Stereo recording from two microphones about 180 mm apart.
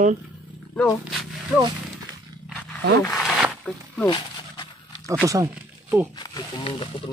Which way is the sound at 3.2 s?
Centre (ahead or behind).